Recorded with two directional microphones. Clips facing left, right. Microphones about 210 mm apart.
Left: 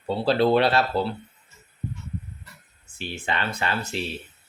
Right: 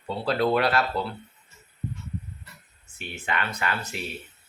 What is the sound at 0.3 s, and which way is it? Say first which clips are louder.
Speech: left 3 dB; 30° left (ahead or behind).